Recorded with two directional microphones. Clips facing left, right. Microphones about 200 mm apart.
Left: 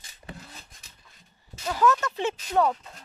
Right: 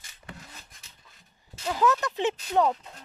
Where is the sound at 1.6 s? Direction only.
15° right (ahead or behind).